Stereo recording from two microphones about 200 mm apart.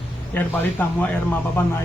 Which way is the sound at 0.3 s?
10° left (ahead or behind).